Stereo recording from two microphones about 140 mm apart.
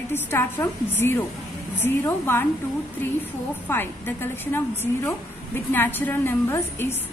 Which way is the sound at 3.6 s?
15° left (ahead or behind).